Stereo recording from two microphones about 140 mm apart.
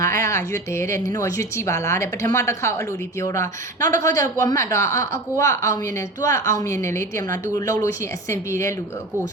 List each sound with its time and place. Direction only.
0.0 s a woman's voice: 20° left (ahead or behind)